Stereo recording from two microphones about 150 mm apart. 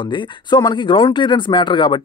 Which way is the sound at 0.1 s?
30° left (ahead or behind).